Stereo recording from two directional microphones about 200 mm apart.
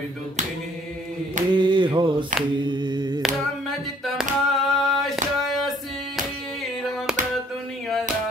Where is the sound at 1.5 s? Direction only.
25° right (ahead or behind).